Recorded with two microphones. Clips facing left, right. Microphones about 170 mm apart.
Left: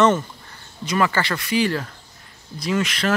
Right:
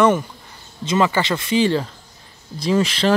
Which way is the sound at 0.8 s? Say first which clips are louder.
Right 3 dB; 20° right (ahead or behind).